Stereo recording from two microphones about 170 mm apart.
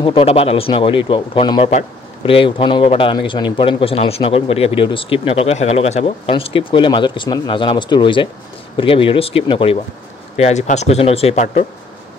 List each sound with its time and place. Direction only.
0.0 s speech: 35° left (ahead or behind)